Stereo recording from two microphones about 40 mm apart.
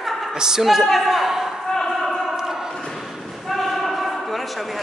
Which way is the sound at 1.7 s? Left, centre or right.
Centre.